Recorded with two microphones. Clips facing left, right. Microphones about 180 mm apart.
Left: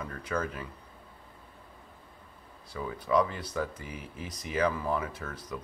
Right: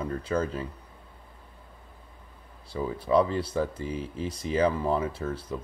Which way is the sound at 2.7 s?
30° right (ahead or behind).